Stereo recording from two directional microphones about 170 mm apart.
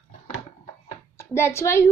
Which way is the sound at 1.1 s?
15° left (ahead or behind).